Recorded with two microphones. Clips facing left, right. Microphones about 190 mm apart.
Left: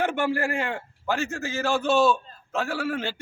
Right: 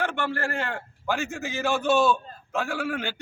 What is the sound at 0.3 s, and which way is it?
A man's voice, 5° left (ahead or behind).